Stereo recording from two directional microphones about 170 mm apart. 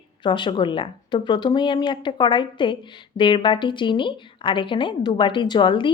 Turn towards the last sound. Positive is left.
turn(degrees=30)  # may be behind; listen again after turning